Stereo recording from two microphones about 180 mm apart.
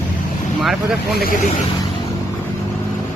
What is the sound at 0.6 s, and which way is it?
Speech, centre (ahead or behind).